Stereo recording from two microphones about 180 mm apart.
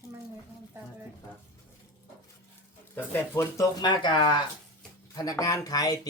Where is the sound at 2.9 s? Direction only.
10° left (ahead or behind).